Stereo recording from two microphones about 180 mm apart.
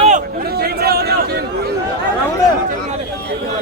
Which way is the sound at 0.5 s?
60° right (ahead or behind).